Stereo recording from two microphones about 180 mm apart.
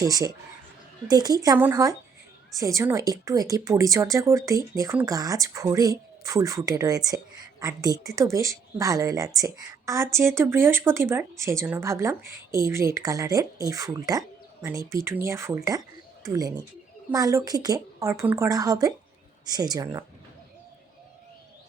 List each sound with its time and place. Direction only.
0.0 s speech: 20° right (ahead or behind)